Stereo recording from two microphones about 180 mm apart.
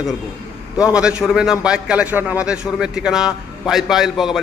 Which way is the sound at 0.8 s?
5° right (ahead or behind).